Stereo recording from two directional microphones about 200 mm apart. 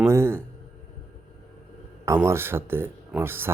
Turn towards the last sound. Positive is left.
turn(degrees=-10)  # may be behind; listen again after turning